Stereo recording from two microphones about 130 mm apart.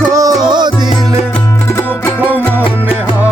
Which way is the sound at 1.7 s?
20° left (ahead or behind).